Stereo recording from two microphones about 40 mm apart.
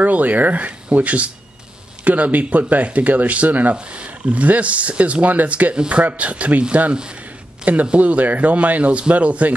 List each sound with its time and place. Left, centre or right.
0.0 s speech: right
3.7 s speech: right